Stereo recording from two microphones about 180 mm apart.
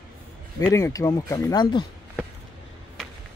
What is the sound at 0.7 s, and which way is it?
Speech, 20° left (ahead or behind).